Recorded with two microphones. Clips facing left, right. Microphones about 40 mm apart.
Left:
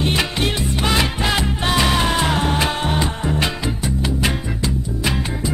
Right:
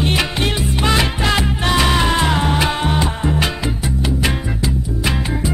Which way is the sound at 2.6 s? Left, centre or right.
Centre.